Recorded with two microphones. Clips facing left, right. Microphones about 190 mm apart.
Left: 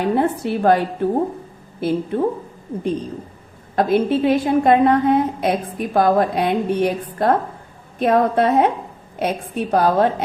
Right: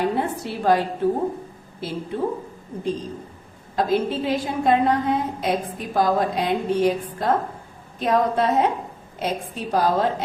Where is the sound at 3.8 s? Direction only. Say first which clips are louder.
Left 5 dB; 60° left (ahead or behind).